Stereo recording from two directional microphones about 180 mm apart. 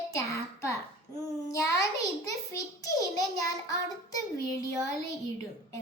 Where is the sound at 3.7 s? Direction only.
20° left (ahead or behind).